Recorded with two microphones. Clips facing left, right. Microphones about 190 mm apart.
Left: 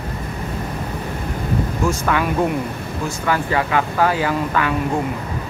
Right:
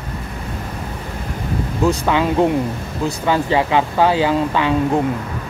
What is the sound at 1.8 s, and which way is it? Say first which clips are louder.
Speech: right 5 dB; 20° right (ahead or behind).